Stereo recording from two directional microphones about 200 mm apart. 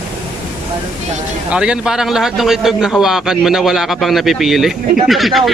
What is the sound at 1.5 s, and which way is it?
A man's voice, 5° right (ahead or behind).